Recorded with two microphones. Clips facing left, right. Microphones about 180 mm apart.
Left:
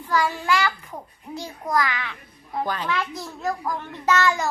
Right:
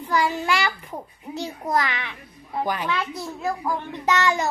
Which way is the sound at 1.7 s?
20° right (ahead or behind).